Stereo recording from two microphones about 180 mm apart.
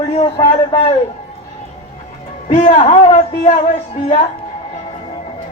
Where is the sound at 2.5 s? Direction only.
40° left (ahead or behind).